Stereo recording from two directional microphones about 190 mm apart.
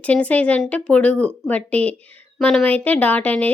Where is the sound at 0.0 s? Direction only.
5° left (ahead or behind).